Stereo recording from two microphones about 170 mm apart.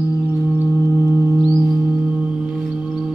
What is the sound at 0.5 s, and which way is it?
Music, 15° left (ahead or behind).